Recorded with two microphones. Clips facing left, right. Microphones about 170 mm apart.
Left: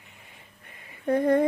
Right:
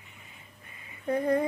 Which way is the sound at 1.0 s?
35° left (ahead or behind).